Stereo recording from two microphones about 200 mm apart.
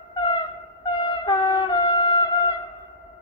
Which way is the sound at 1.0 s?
20° left (ahead or behind).